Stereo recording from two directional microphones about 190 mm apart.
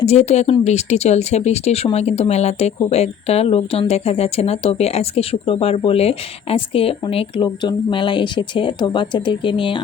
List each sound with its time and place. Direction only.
0.0 s speech: 35° left (ahead or behind)